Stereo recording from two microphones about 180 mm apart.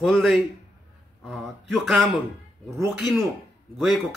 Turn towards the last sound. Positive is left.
turn(degrees=0)  # may be behind; listen again after turning